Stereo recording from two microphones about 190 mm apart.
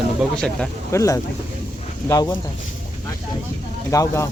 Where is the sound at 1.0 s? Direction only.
15° left (ahead or behind).